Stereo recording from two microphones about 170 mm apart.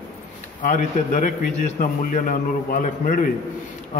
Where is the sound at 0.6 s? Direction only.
45° left (ahead or behind).